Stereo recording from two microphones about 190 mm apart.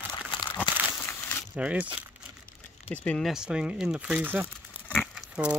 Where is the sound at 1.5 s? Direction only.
5° right (ahead or behind).